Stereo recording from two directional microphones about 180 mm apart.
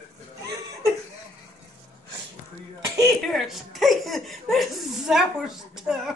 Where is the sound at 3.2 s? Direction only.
Centre (ahead or behind).